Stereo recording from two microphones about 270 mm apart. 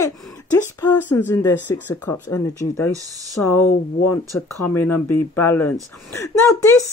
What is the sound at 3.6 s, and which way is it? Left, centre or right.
Speech, left.